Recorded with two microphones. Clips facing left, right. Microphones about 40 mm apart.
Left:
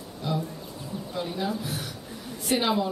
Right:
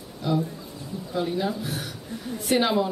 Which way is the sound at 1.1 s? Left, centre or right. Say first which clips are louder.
Right 5 dB; centre.